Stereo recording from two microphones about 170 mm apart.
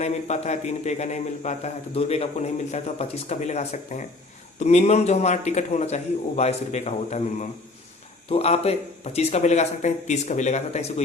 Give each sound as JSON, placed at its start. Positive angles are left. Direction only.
{"t": 0.0, "sound": "a man's voice", "side_deg": 40}